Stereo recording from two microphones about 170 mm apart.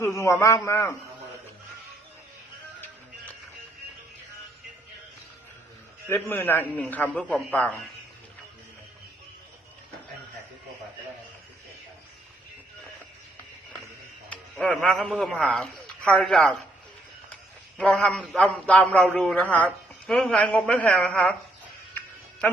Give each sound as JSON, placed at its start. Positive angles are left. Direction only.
{"t": 0.0, "sound": "a man's voice", "side_deg": 15}
{"t": 6.1, "sound": "a man's voice", "side_deg": 15}
{"t": 14.3, "sound": "speech", "side_deg": 5}
{"t": 17.7, "sound": "a man's voice", "side_deg": 5}